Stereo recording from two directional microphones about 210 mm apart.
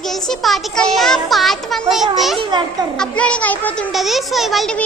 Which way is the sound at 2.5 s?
20° right (ahead or behind).